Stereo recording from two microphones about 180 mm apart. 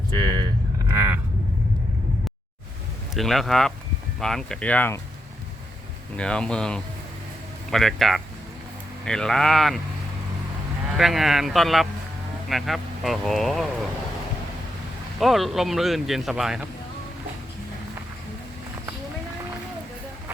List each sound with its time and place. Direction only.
0.1 s a sound: 25° right (ahead or behind)
0.9 s a sound: 10° right (ahead or behind)
3.2 s speech: centre (ahead or behind)
6.1 s speech: 5° left (ahead or behind)
10.9 s speech: centre (ahead or behind)
15.2 s speech: centre (ahead or behind)